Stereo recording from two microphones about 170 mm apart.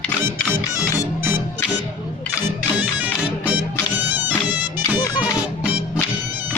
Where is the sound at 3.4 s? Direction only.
10° right (ahead or behind).